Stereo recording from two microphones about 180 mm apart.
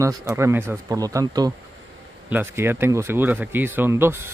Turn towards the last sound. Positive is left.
turn(degrees=-15)  # may be behind; listen again after turning